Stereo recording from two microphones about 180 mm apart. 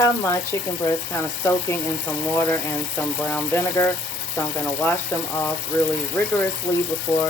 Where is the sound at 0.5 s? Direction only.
15° left (ahead or behind).